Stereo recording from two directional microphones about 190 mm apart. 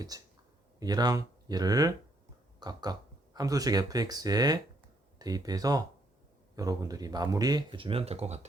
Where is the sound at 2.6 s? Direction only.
20° right (ahead or behind).